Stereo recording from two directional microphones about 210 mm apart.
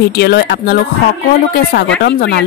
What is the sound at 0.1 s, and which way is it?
A woman's voice, 50° left (ahead or behind).